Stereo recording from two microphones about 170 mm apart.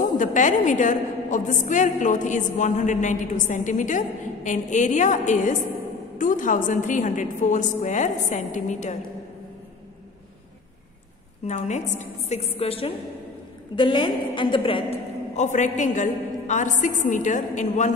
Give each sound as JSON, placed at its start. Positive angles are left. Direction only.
{"t": 0.0, "sound": "a woman's voice", "side_deg": 50}
{"t": 11.4, "sound": "a woman's voice", "side_deg": 45}